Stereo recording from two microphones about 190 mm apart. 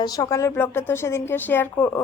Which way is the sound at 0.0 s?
20° left (ahead or behind).